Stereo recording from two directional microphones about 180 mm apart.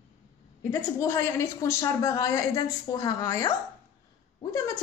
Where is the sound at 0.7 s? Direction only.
15° left (ahead or behind).